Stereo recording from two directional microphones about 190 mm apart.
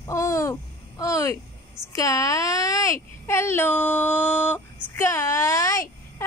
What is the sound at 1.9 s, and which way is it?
A child's voice, 15° left (ahead or behind).